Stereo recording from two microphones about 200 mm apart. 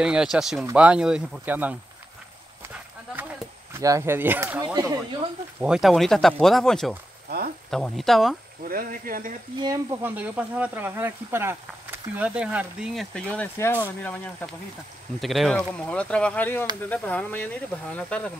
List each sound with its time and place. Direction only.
0.0 s speech: 5° right (ahead or behind)
3.7 s speech: 15° right (ahead or behind)
4.7 s speech: 20° right (ahead or behind)
5.6 s speech: centre (ahead or behind)
8.6 s speech: 45° right (ahead or behind)
9.6 s speech: 20° right (ahead or behind); by 18.3 s 5° left (ahead or behind)